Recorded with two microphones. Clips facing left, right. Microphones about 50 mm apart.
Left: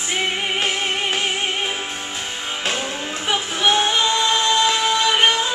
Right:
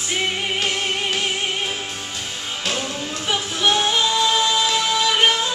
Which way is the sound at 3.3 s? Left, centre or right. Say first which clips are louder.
Left 1 dB; centre.